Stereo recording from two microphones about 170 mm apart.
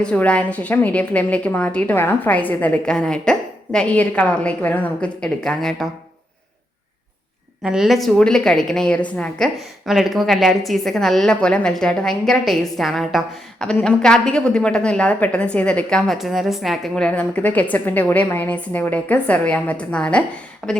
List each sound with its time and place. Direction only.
0.0 s a woman's voice: 5° left (ahead or behind)
7.6 s a woman's voice: 5° right (ahead or behind)